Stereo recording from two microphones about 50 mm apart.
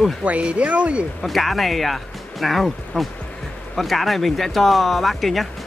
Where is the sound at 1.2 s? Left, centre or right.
Centre.